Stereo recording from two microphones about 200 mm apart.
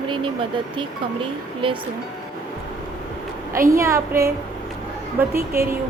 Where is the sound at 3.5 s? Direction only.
15° right (ahead or behind).